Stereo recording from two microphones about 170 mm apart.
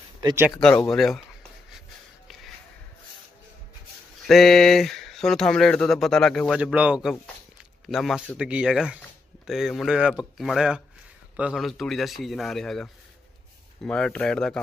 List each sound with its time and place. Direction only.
0.5 s speech: 5° left (ahead or behind)
4.3 s speech: centre (ahead or behind)